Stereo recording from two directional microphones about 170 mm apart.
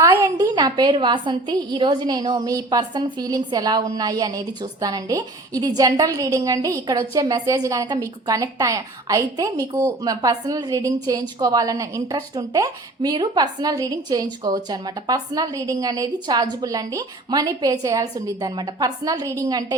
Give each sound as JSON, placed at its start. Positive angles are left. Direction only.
{"t": 0.0, "sound": "a woman's voice", "side_deg": -20}